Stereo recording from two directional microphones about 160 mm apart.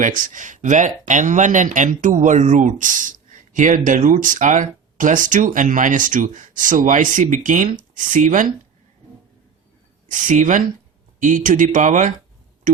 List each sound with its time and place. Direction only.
0.0 s speech: 55° right (ahead or behind)
10.1 s speech: 55° right (ahead or behind)
12.7 s a sound: 55° right (ahead or behind)